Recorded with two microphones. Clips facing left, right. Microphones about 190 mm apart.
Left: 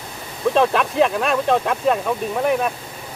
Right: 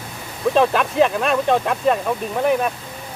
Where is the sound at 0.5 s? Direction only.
Centre (ahead or behind).